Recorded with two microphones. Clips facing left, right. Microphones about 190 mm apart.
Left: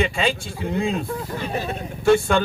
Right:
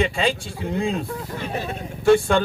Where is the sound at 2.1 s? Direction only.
35° right (ahead or behind).